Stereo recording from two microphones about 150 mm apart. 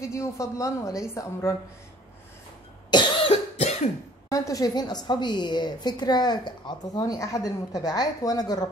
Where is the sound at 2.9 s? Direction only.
35° left (ahead or behind).